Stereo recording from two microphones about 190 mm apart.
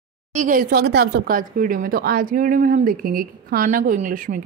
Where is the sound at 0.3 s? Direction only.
40° right (ahead or behind).